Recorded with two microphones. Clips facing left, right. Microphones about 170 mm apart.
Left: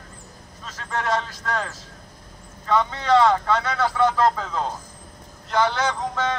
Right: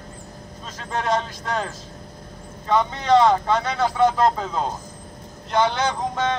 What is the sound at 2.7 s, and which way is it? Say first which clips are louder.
A man's voice: right 1 dB; 20° right (ahead or behind).